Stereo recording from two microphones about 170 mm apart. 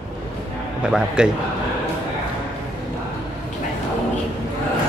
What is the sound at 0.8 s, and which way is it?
Speech, 5° right (ahead or behind).